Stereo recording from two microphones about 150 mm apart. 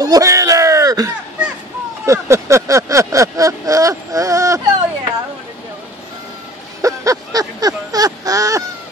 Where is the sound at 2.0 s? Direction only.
20° right (ahead or behind).